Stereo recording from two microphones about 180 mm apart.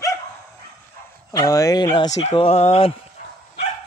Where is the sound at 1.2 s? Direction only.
20° left (ahead or behind).